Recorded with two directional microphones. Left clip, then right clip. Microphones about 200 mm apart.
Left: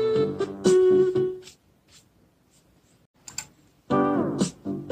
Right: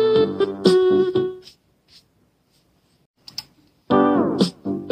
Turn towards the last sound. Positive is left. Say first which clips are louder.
# right 7 dB
turn(degrees=-35)  # may be behind; listen again after turning